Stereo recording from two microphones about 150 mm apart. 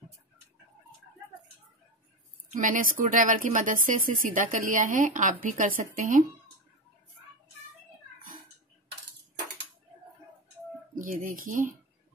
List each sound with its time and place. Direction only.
2.5 s speech: 60° right (ahead or behind)
11.1 s speech: 65° right (ahead or behind)